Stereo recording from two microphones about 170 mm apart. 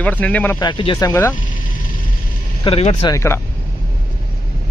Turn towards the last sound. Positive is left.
turn(degrees=15)  # may be behind; listen again after turning